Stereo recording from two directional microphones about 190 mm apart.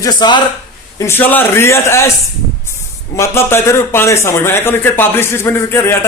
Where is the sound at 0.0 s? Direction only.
20° left (ahead or behind).